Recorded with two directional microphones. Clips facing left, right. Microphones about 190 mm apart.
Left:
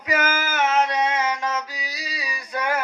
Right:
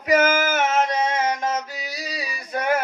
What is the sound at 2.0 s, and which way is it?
Female singing, 45° right (ahead or behind).